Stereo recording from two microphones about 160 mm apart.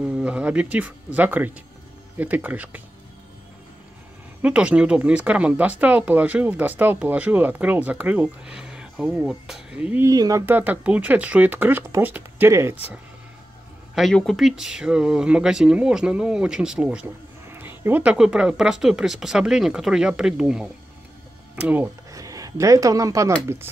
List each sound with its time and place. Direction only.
0.2 s speech: 5° right (ahead or behind)
4.4 s speech: 10° right (ahead or behind)
10.0 s speech: 20° right (ahead or behind)
13.9 s speech: centre (ahead or behind)
22.1 s speech: 20° right (ahead or behind)